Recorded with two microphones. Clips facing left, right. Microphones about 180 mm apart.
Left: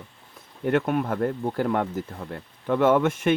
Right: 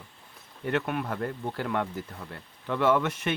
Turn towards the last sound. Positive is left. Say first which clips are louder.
# left 5 dB
turn(degrees=50)  # may be behind; listen again after turning